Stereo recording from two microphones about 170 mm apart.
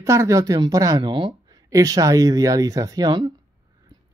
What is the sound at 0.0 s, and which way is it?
Speech, 15° right (ahead or behind).